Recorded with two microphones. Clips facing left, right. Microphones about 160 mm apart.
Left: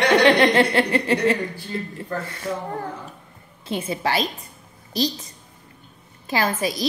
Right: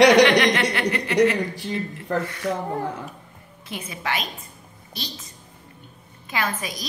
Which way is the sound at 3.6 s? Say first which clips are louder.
Left 7 dB; 30° left (ahead or behind).